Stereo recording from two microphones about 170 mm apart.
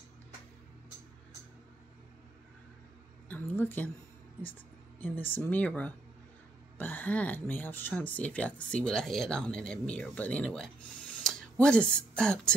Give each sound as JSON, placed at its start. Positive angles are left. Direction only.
{"t": 3.3, "sound": "speech", "side_deg": 10}
{"t": 5.0, "sound": "speech", "side_deg": 10}